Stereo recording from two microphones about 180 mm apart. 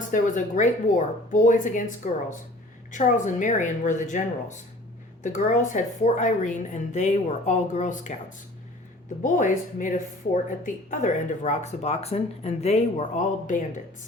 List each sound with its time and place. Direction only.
0.1 s a woman's voice: 45° left (ahead or behind)
9.2 s a woman's voice: 45° left (ahead or behind)